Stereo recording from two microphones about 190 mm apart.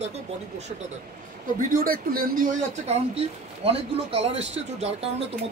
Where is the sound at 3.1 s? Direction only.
30° right (ahead or behind).